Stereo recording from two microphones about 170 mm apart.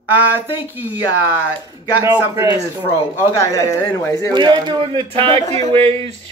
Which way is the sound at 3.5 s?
20° left (ahead or behind).